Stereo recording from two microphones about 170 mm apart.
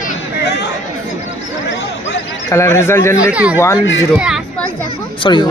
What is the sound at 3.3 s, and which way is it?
Speech, 5° right (ahead or behind).